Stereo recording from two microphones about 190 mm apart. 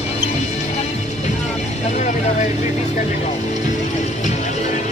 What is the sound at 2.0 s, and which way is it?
Vehicle, 40° left (ahead or behind).